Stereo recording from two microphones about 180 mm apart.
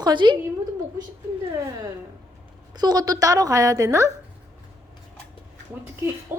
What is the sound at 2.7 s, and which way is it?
A woman's voice, 20° right (ahead or behind).